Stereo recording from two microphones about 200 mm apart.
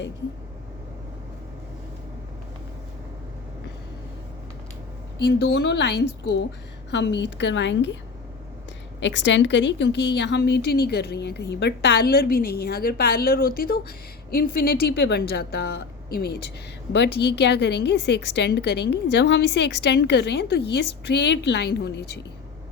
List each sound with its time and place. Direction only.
5.1 s a woman's voice: 55° left (ahead or behind)
9.0 s a woman's voice: 65° left (ahead or behind)